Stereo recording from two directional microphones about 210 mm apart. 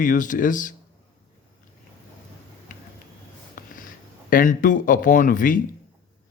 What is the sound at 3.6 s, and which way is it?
Sniff, 40° left (ahead or behind).